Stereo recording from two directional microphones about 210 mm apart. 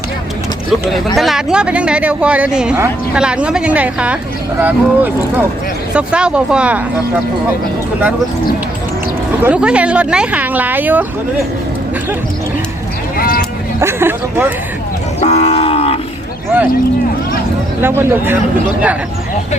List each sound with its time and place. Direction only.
0.9 s speech: centre (ahead or behind)
9.4 s speech: 5° right (ahead or behind)
13.1 s vehicle: 45° left (ahead or behind)
13.8 s speech: 10° right (ahead or behind)
15.2 s moo: 30° left (ahead or behind)
17.8 s speech: 10° right (ahead or behind)